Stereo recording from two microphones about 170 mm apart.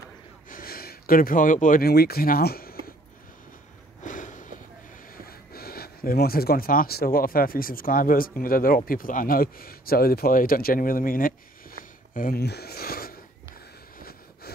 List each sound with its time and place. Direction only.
0.5 s speech: 60° left (ahead or behind)
4.0 s sniff: 50° left (ahead or behind)
5.1 s speech: 60° left (ahead or behind)
13.9 s a sound: 60° left (ahead or behind)